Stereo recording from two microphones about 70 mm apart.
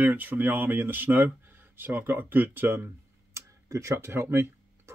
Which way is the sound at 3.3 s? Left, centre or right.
Right.